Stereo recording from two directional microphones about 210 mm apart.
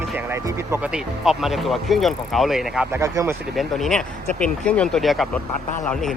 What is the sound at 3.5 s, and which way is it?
Speech, centre (ahead or behind).